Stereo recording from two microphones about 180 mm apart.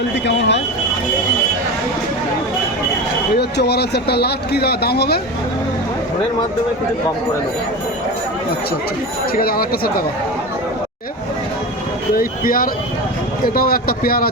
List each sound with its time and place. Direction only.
0.3 s speech: 80° left
3.3 s speech: 65° left (ahead or behind)
9.4 s speech: 55° left (ahead or behind)
12.1 s speech: 50° left (ahead or behind)